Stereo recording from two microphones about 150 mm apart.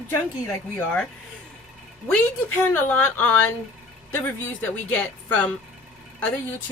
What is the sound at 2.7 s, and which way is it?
Speech, 15° left (ahead or behind).